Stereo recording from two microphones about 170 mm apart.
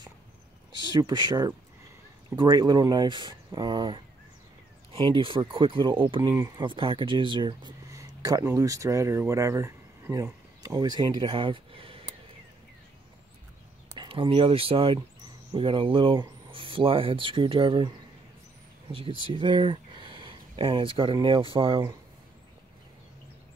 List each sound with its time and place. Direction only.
1.0 s speech: 25° right (ahead or behind)
6.3 s speech: 15° right (ahead or behind)
6.6 s speech: 30° right (ahead or behind)
13.9 s speech: 30° right (ahead or behind)